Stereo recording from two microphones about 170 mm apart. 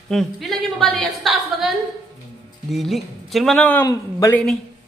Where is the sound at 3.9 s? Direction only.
20° left (ahead or behind).